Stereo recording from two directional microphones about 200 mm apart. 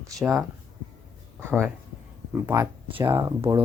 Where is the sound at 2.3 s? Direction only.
15° right (ahead or behind).